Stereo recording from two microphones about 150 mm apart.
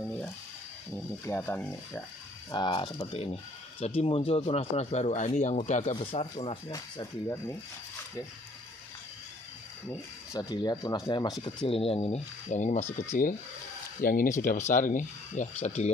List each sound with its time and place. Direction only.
0.0 s a sound: 5° left (ahead or behind)
0.9 s speech: 15° left (ahead or behind)
2.5 s speech: 30° left (ahead or behind)
3.1 s speech: 40° left (ahead or behind)
5.9 s speech: 40° left (ahead or behind)
6.7 s speech: 20° left (ahead or behind)
9.8 s speech: 25° left (ahead or behind); by 12.8 s 50° left (ahead or behind)
14.0 s speech: 65° left (ahead or behind)